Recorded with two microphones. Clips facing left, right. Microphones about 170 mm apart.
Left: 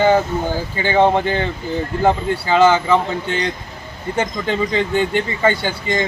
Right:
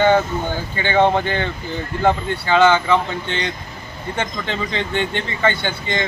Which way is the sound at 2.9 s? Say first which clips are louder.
Left 2 dB; 35° left (ahead or behind).